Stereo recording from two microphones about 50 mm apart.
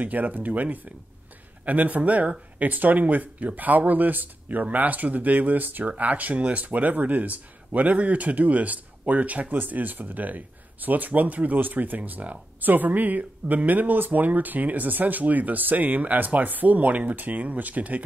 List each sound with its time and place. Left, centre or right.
0.0 s speech: right